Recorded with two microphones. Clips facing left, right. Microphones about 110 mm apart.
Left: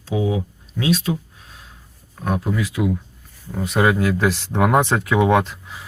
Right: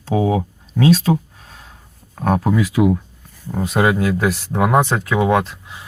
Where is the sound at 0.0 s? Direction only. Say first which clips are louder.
Right 4 dB; 50° right (ahead or behind).